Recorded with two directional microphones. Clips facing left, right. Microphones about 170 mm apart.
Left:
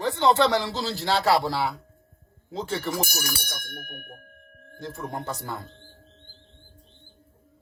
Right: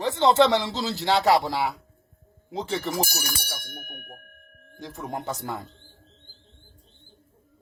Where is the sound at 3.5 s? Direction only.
5° right (ahead or behind).